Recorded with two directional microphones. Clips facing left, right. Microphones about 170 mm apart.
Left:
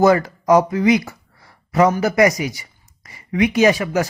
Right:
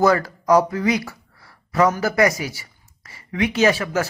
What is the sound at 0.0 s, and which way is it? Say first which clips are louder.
Speech: left 3 dB; 20° left (ahead or behind).